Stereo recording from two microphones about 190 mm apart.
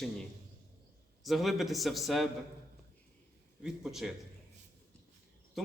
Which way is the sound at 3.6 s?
Centre (ahead or behind).